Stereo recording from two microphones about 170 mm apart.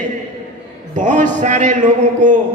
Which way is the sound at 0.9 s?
45° right (ahead or behind).